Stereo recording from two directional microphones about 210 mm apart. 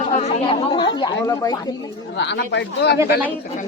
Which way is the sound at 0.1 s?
30° left (ahead or behind).